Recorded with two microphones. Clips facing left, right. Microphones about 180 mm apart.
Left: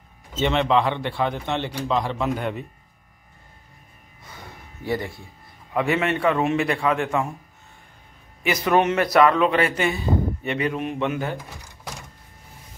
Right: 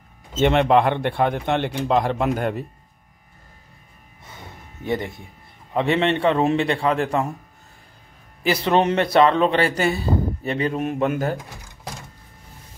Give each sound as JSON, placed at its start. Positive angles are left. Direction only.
{"t": 0.4, "sound": "speech", "side_deg": -50}
{"t": 4.8, "sound": "a man's voice", "side_deg": -20}
{"t": 8.5, "sound": "a man's voice", "side_deg": -30}